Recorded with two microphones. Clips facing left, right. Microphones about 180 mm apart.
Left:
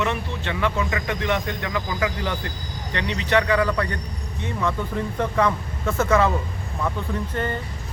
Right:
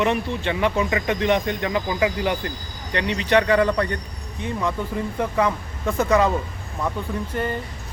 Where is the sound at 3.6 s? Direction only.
25° right (ahead or behind).